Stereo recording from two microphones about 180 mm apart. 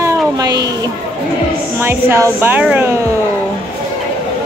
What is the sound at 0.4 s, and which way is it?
Speech, 20° right (ahead or behind).